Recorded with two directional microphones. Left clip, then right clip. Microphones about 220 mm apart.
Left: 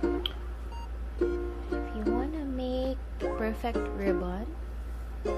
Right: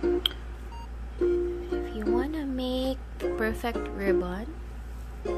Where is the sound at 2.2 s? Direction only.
20° right (ahead or behind).